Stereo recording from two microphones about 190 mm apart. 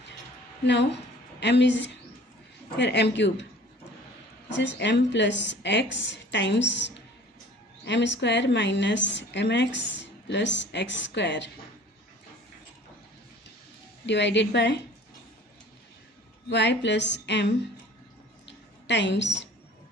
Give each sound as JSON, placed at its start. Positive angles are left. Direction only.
{"t": 0.7, "sound": "a woman's voice", "side_deg": 65}
{"t": 4.5, "sound": "a woman's voice", "side_deg": 70}
{"t": 14.0, "sound": "a woman's voice", "side_deg": 65}
{"t": 16.4, "sound": "a woman's voice", "side_deg": 65}
{"t": 18.9, "sound": "a woman's voice", "side_deg": 70}